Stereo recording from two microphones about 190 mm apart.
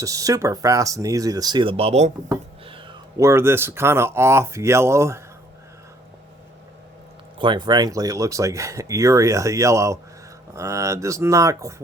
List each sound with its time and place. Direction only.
0.0 s speech: 15° right (ahead or behind); by 2.1 s 35° right (ahead or behind)
2.6 s a sound: 25° right (ahead or behind)
3.2 s speech: 15° right (ahead or behind)
7.3 s speech: 25° right (ahead or behind)